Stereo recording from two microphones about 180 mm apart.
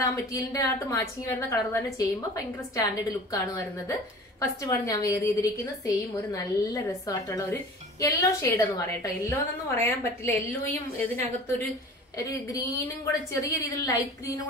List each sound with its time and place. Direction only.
0.0 s a woman's voice: 20° left (ahead or behind)